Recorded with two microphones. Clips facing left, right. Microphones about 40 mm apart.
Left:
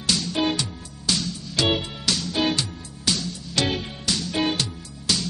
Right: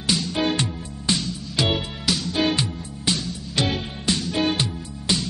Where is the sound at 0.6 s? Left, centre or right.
Right.